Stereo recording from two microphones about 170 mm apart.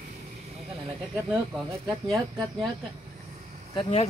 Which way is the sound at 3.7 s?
30° left (ahead or behind).